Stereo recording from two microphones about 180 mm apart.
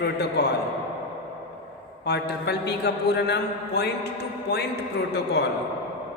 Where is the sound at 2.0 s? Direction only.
65° left (ahead or behind).